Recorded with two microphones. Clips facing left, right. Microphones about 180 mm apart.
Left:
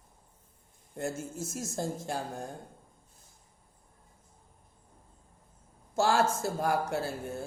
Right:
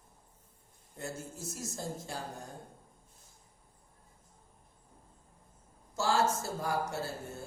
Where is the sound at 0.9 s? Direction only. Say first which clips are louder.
Left 6 dB; 50° left (ahead or behind).